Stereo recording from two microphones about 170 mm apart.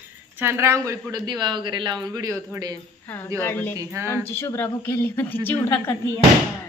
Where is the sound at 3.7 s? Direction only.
15° right (ahead or behind).